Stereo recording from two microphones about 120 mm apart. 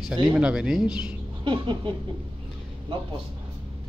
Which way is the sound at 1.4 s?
40° right (ahead or behind).